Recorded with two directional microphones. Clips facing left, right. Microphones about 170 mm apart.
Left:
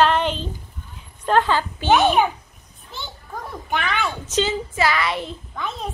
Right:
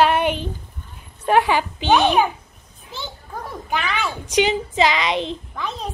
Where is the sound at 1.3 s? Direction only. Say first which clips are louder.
Right 2 dB; 10° right (ahead or behind).